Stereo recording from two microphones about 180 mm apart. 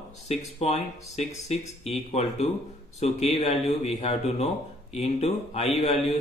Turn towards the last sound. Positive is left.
turn(degrees=35)  # may be behind; listen again after turning